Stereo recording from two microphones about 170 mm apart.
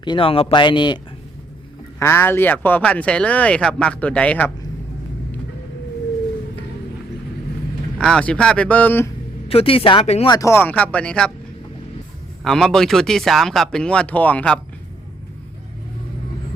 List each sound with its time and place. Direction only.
0.0 s speech: 30° left (ahead or behind)
2.0 s speech: 15° left (ahead or behind)
7.9 s speech: 5° left (ahead or behind)
9.5 s speech: 35° left (ahead or behind)
10.3 s speech: 15° left (ahead or behind)
12.4 s speech: centre (ahead or behind)